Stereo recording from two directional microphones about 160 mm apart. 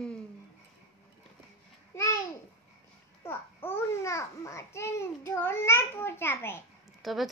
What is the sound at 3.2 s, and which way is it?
Babbling, 15° left (ahead or behind).